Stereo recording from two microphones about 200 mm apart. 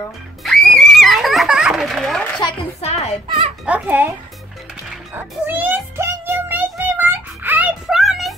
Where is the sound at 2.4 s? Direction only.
30° left (ahead or behind).